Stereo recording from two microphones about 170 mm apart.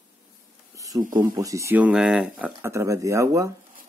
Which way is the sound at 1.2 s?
20° right (ahead or behind).